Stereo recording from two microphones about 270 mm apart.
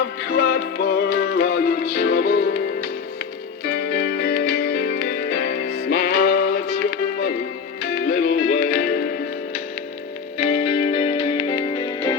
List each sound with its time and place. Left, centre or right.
0.0 s music: left
7.9 s music: left
10.3 s music: left